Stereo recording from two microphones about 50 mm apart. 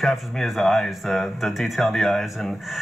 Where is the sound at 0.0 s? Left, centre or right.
Centre.